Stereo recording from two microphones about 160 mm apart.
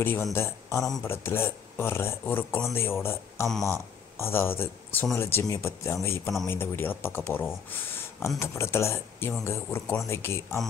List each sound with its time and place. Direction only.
0.0 s speech: 15° left (ahead or behind)